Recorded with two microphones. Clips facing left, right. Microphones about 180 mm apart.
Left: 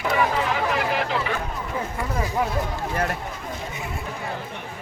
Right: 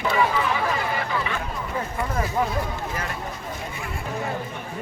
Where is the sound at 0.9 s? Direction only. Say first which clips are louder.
Left 2 dB; 75° left (ahead or behind).